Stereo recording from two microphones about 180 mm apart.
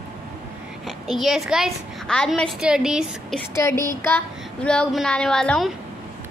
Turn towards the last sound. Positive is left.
turn(degrees=5)  # may be behind; listen again after turning